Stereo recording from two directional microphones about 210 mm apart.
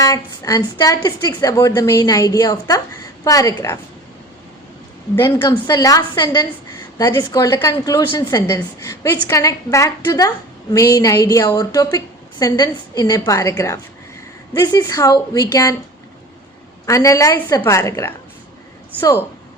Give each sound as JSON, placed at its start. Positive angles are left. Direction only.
{"t": 0.0, "sound": "a woman's voice", "side_deg": 15}
{"t": 5.1, "sound": "a woman's voice", "side_deg": 15}
{"t": 16.8, "sound": "a woman's voice", "side_deg": 15}